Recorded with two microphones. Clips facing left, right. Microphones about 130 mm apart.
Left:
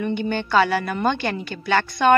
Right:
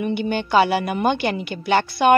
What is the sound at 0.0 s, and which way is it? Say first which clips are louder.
A woman's voice: right 1 dB; 10° right (ahead or behind).